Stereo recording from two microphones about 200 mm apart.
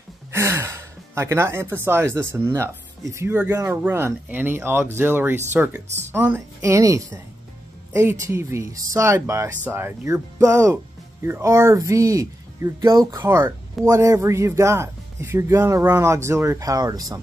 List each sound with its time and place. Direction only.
0.3 s speech: 15° right (ahead or behind)